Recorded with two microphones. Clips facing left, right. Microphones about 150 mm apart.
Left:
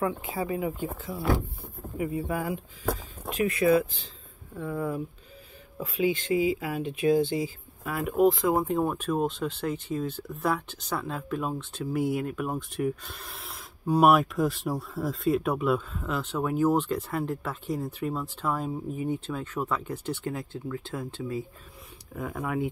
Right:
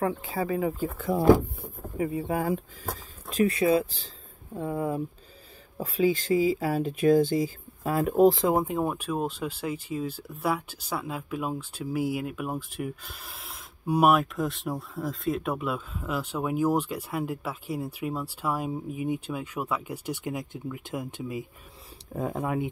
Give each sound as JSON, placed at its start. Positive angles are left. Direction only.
{"t": 0.0, "sound": "speech", "side_deg": -35}
{"t": 2.0, "sound": "speech", "side_deg": -30}
{"t": 2.5, "sound": "speech", "side_deg": -40}
{"t": 7.8, "sound": "speech", "side_deg": -30}
{"t": 8.5, "sound": "speech", "side_deg": -10}
{"t": 14.1, "sound": "speech", "side_deg": 0}
{"t": 22.1, "sound": "speech", "side_deg": -30}